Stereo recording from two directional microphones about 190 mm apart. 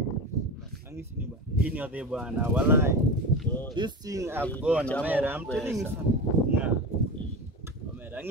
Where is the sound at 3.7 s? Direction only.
20° right (ahead or behind).